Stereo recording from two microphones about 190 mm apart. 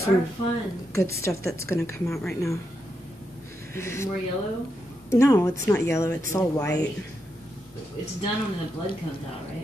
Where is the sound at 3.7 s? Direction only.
15° left (ahead or behind).